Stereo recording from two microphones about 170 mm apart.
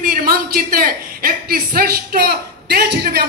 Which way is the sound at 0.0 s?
60° right (ahead or behind).